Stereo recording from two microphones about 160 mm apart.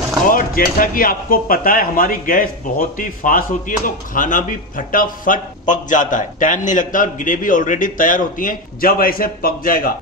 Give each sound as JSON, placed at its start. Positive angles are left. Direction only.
{"t": 0.3, "sound": "speech", "side_deg": 60}